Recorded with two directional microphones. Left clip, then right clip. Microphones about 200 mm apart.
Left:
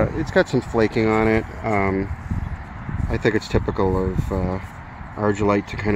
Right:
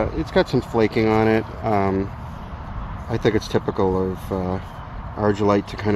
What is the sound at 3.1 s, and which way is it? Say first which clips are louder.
Speech: even; 15° left (ahead or behind).